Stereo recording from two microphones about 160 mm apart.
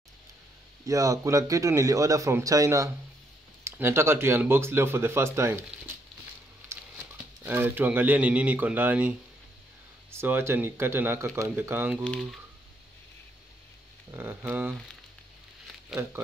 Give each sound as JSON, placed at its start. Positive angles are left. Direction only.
{"t": 0.8, "sound": "speech", "side_deg": -20}
{"t": 6.7, "sound": "patter", "side_deg": -15}
{"t": 7.4, "sound": "speech", "side_deg": -15}
{"t": 10.1, "sound": "speech", "side_deg": -15}
{"t": 14.1, "sound": "speech", "side_deg": -15}
{"t": 15.9, "sound": "speech", "side_deg": -15}